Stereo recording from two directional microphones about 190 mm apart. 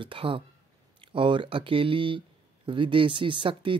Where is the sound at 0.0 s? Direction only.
25° right (ahead or behind).